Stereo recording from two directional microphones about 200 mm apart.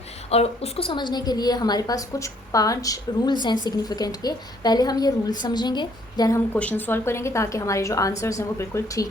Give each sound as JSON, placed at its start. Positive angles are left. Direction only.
{"t": 0.3, "sound": "a woman's voice", "side_deg": 30}